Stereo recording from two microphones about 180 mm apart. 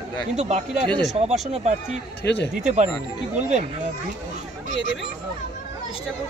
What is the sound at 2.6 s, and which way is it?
Speech, 40° right (ahead or behind).